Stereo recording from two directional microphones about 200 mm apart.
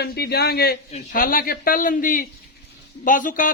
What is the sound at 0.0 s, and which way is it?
A man's voice, 50° left (ahead or behind).